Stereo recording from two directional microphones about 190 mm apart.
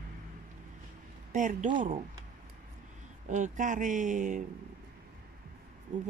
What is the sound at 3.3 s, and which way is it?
Speech, 40° right (ahead or behind).